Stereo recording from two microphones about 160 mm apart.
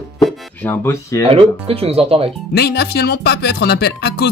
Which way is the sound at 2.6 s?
85° left.